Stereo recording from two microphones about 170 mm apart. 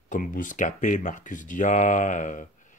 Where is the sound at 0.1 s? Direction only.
50° left (ahead or behind).